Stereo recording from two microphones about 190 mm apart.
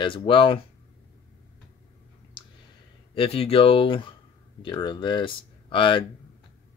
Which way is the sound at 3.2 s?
30° left (ahead or behind).